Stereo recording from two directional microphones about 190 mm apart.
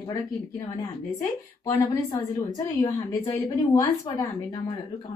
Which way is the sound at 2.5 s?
20° left (ahead or behind).